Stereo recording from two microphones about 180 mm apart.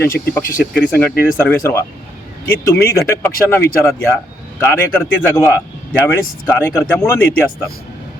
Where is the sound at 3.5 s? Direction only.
15° left (ahead or behind).